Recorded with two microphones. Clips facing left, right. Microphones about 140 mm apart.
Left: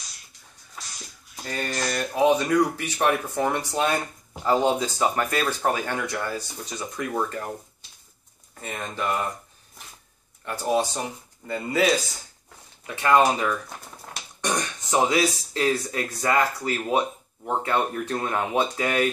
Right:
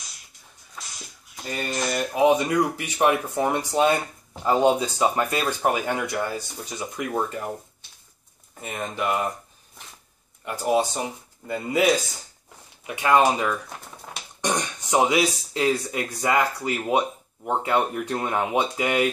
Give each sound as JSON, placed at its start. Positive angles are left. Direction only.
{"t": 1.4, "sound": "speech", "side_deg": -15}
{"t": 8.5, "sound": "speech", "side_deg": -10}
{"t": 10.4, "sound": "speech", "side_deg": -10}
{"t": 13.7, "sound": "typewriter", "side_deg": 0}
{"t": 14.4, "sound": "speech", "side_deg": -15}